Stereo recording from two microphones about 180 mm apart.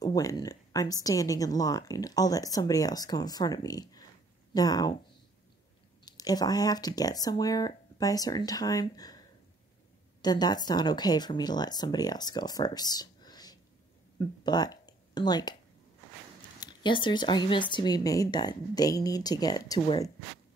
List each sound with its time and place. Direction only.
0.0 s a woman's voice: 20° left (ahead or behind)
6.0 s a woman's voice: 20° left (ahead or behind)
10.2 s a woman's voice: 20° left (ahead or behind)
16.5 s a woman's voice: 25° left (ahead or behind)